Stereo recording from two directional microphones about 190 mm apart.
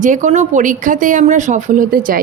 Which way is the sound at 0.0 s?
40° right (ahead or behind).